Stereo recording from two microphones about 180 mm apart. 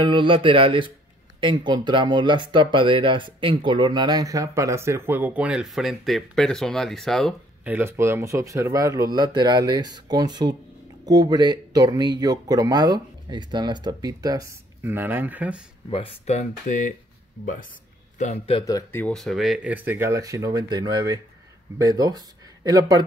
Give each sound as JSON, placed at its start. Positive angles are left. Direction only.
{"t": 0.0, "sound": "speech", "side_deg": -30}
{"t": 7.6, "sound": "speech", "side_deg": -10}
{"t": 15.9, "sound": "speech", "side_deg": 35}
{"t": 18.1, "sound": "a man's voice", "side_deg": 40}
{"t": 18.7, "sound": "speech", "side_deg": 15}